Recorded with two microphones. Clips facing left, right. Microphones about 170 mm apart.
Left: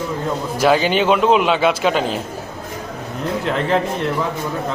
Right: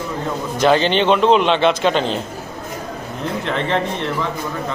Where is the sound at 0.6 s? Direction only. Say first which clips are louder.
Right 1 dB; 5° left (ahead or behind).